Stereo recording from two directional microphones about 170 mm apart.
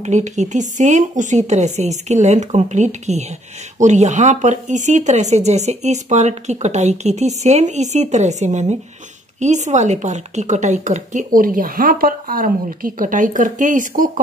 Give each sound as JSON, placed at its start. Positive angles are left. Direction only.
{"t": 0.0, "sound": "speech", "side_deg": -45}